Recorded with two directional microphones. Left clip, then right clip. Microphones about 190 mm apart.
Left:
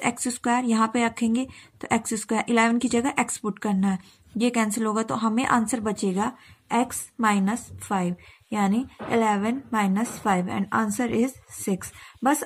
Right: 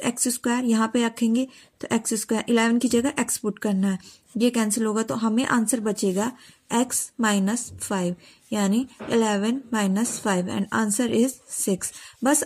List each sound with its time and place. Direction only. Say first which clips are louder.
0.0 s speech: even; 25° right (ahead or behind)